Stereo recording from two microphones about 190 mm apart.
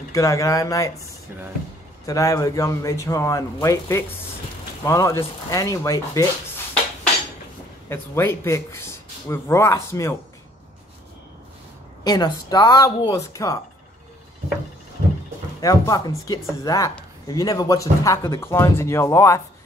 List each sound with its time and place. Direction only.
0.1 s speech: 15° left (ahead or behind)
2.0 s speech: 20° left (ahead or behind)
7.9 s speech: 15° left (ahead or behind)
12.0 s speech: 20° left (ahead or behind)
15.6 s speech: 20° left (ahead or behind)